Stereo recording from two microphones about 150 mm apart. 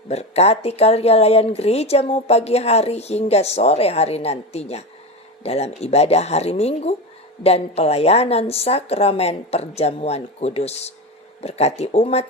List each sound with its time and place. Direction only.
0.1 s speech: 45° left (ahead or behind)